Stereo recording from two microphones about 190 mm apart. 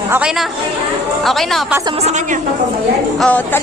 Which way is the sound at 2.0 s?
35° right (ahead or behind).